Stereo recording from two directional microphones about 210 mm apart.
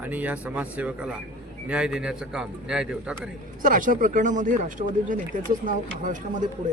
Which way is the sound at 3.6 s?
40° right (ahead or behind).